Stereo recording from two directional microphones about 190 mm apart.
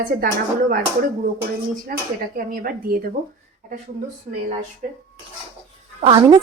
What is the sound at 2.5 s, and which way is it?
Speech, 50° right (ahead or behind).